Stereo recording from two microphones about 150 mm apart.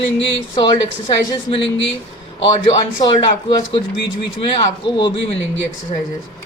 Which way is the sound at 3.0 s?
35° left (ahead or behind).